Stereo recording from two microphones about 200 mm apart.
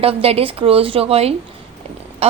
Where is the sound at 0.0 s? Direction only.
30° right (ahead or behind).